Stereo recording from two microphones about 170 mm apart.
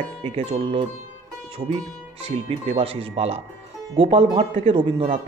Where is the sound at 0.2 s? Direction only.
35° right (ahead or behind).